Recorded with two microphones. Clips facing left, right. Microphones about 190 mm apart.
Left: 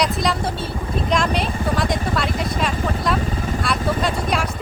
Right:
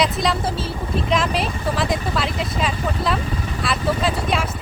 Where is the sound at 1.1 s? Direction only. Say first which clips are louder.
Left 1 dB; 5° right (ahead or behind).